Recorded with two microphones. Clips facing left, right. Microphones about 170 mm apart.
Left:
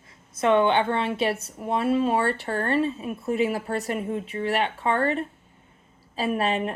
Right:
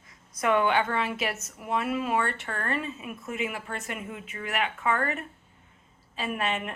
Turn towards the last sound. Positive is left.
turn(degrees=35)  # may be behind; listen again after turning